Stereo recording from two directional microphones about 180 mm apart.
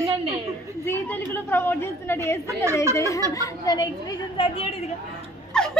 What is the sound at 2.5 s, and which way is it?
Speech, 15° right (ahead or behind).